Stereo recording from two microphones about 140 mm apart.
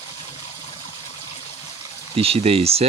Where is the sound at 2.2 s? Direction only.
45° right (ahead or behind).